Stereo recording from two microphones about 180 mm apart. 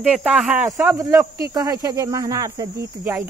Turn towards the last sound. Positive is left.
turn(degrees=-15)  # may be behind; listen again after turning